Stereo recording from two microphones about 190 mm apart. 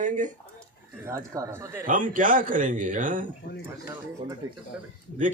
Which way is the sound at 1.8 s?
45° right (ahead or behind).